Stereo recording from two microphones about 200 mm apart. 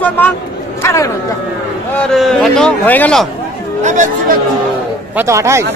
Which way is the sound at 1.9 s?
Centre (ahead or behind).